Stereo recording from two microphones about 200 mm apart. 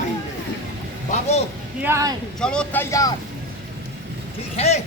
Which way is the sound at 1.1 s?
35° left (ahead or behind).